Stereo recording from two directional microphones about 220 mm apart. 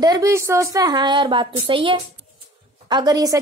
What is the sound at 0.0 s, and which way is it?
A woman's voice, 15° right (ahead or behind).